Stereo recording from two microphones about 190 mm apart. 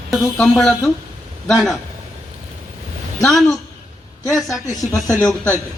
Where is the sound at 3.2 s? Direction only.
Centre (ahead or behind).